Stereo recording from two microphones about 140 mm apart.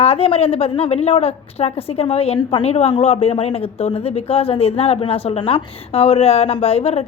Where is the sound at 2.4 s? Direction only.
35° left (ahead or behind).